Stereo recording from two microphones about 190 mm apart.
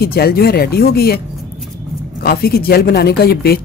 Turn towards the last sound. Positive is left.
turn(degrees=55)  # may be behind; listen again after turning